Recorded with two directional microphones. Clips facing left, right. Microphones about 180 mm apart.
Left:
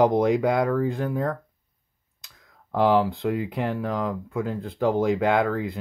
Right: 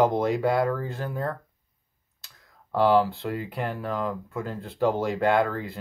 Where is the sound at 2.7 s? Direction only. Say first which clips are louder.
Even; 15° left (ahead or behind).